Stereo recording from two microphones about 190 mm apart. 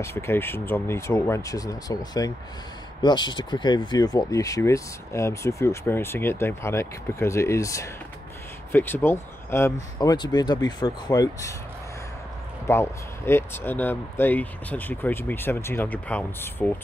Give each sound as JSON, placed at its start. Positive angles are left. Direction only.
{"t": 0.0, "sound": "speech", "side_deg": 15}
{"t": 12.6, "sound": "speech", "side_deg": 10}